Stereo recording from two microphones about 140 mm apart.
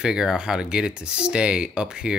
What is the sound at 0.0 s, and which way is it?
Speech, 5° right (ahead or behind).